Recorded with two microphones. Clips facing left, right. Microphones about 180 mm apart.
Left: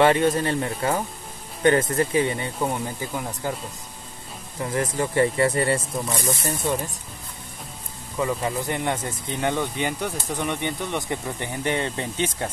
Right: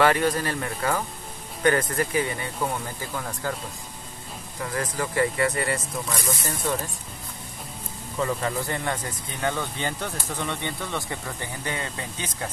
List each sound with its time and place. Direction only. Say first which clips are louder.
0.0 s speech: left 3 dB; 25° left (ahead or behind)
4.6 s speech: left 4 dB; 25° left (ahead or behind)
8.2 s speech: left 2 dB; 10° left (ahead or behind)